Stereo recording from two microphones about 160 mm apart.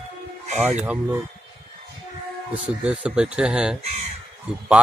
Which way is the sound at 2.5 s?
10° right (ahead or behind).